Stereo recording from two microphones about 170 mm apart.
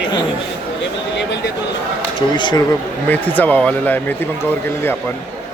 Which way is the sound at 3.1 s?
10° left (ahead or behind).